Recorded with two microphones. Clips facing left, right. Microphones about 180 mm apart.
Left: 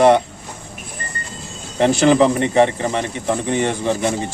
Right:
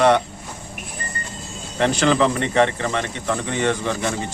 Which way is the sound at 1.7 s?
15° left (ahead or behind).